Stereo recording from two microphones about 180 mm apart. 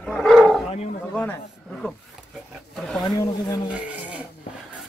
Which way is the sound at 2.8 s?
Centre (ahead or behind).